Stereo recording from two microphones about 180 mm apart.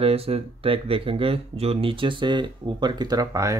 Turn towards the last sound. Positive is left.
turn(degrees=-15)  # may be behind; listen again after turning